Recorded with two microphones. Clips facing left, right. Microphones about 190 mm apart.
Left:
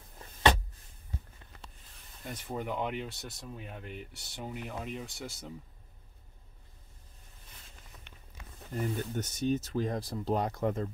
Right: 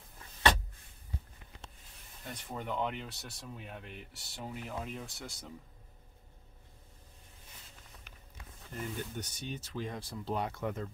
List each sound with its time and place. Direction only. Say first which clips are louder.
2.2 s speech: left 4 dB; 5° left (ahead or behind)
8.9 s speech: left 5 dB; 45° left (ahead or behind)